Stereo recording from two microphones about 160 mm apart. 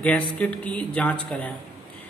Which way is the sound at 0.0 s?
10° left (ahead or behind).